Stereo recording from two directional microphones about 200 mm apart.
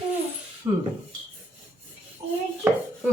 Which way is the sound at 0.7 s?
15° right (ahead or behind).